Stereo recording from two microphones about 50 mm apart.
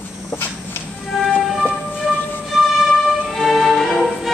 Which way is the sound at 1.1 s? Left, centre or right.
Centre.